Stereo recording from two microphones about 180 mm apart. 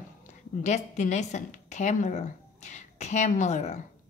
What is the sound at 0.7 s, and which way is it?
A woman's voice, 40° left (ahead or behind).